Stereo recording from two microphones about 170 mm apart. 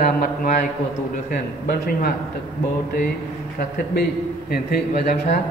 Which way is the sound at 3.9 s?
70° left (ahead or behind).